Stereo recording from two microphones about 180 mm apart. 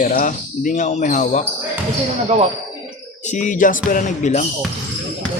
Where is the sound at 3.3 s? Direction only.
45° left (ahead or behind).